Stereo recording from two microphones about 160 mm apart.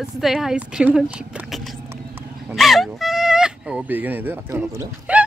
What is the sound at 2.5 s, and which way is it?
Speech, centre (ahead or behind).